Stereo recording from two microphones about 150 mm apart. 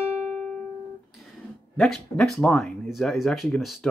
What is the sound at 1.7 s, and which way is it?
Speech, centre (ahead or behind).